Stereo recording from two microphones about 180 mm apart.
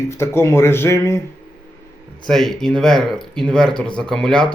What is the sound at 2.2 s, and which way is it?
A man's voice, centre (ahead or behind).